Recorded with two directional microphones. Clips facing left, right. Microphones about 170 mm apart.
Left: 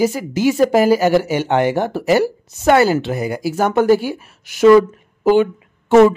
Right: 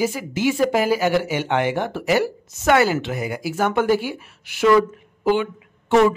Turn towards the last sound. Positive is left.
turn(degrees=45)  # may be behind; listen again after turning